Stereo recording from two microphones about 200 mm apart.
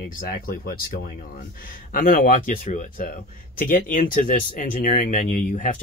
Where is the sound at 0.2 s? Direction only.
45° left (ahead or behind).